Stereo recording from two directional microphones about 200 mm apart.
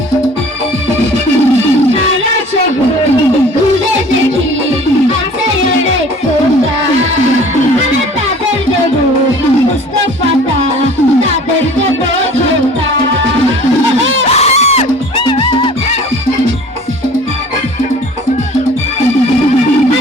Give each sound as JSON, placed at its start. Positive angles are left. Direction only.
{"t": 14.3, "sound": "music", "side_deg": 35}